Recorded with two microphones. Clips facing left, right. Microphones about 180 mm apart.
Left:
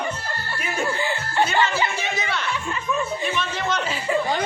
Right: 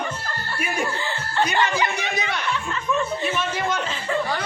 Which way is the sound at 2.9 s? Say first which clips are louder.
Right 2 dB; 10° right (ahead or behind).